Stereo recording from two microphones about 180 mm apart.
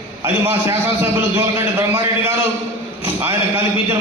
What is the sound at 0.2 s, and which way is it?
A man's voice, 15° right (ahead or behind).